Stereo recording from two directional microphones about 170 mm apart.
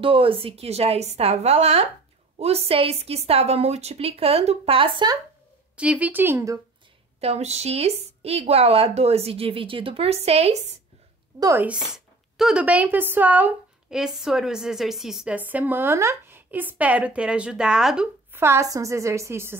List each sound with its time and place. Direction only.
0.0 s a woman's voice: 30° right (ahead or behind)
5.8 s speech: 10° right (ahead or behind)
7.2 s a woman's voice: 40° right (ahead or behind)
11.3 s speech: 20° right (ahead or behind)
11.6 s speech: 5° right (ahead or behind)